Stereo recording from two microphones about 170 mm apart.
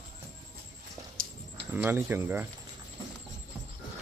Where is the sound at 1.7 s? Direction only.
10° right (ahead or behind).